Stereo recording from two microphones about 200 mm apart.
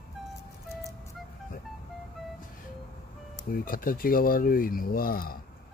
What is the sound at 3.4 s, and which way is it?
Speech, 45° left (ahead or behind).